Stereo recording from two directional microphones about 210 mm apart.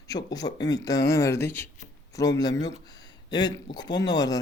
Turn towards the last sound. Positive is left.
turn(degrees=20)  # may be behind; listen again after turning